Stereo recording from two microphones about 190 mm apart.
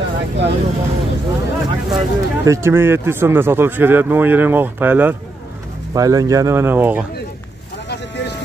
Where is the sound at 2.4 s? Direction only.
15° right (ahead or behind).